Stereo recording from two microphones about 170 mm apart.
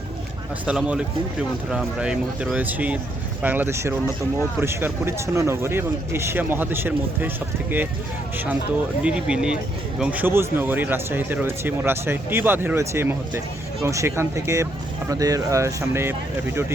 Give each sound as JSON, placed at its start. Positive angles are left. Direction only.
{"t": 0.6, "sound": "speech", "side_deg": -5}
{"t": 9.0, "sound": "speech", "side_deg": -5}